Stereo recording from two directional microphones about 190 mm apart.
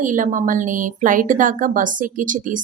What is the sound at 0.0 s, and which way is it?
A woman's voice, 45° right (ahead or behind).